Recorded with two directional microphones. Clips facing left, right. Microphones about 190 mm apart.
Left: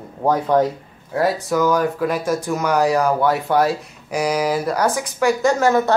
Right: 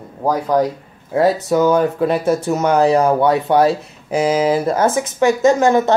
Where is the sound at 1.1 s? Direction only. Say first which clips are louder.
Right 4 dB; 25° right (ahead or behind).